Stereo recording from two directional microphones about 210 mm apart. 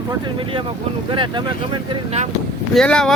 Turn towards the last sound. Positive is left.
turn(degrees=5)  # may be behind; listen again after turning